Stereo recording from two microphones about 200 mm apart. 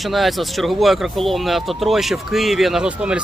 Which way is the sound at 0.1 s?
Centre (ahead or behind).